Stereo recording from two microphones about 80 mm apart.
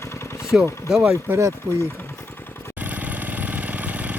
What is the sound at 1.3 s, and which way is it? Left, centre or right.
Speech, right.